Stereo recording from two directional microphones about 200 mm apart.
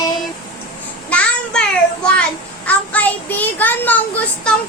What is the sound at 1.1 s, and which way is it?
Child singing, 5° left (ahead or behind).